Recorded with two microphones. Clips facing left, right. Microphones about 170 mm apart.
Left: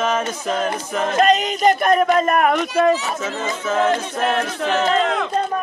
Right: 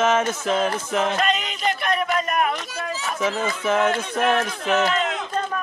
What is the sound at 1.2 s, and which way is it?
A man's voice, 40° left (ahead or behind).